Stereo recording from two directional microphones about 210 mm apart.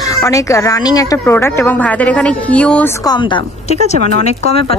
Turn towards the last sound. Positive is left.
turn(degrees=30)  # may be behind; listen again after turning